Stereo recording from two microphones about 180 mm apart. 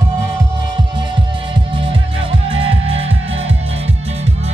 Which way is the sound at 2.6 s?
30° right (ahead or behind).